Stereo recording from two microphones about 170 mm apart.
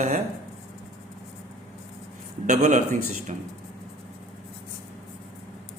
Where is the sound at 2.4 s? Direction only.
45° right (ahead or behind).